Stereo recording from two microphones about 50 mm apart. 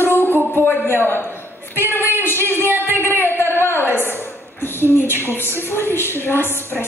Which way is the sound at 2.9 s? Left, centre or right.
Left.